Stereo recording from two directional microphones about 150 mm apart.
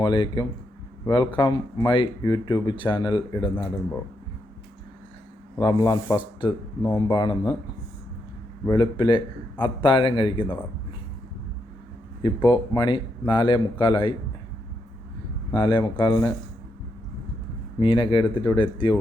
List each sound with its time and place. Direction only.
0.0 s speech: 30° left (ahead or behind)
5.5 s speech: 30° left (ahead or behind)
8.6 s speech: 30° left (ahead or behind)
12.2 s speech: 30° left (ahead or behind)
15.5 s speech: 35° left (ahead or behind)
17.7 s speech: 35° left (ahead or behind)